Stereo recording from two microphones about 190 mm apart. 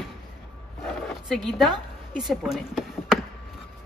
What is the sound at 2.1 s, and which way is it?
Speech, centre (ahead or behind).